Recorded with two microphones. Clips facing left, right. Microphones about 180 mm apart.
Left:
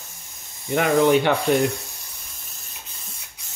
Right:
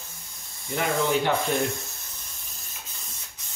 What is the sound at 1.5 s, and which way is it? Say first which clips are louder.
Speech: left 7 dB; 75° left (ahead or behind).